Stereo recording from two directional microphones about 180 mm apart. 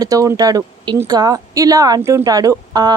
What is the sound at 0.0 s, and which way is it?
Speech, 20° right (ahead or behind).